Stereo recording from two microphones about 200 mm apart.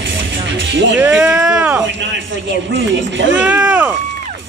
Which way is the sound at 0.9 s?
5° right (ahead or behind).